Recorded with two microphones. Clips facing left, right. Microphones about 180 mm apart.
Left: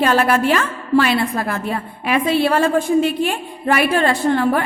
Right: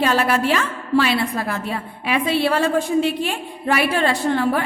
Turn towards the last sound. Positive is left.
turn(degrees=50)  # may be behind; listen again after turning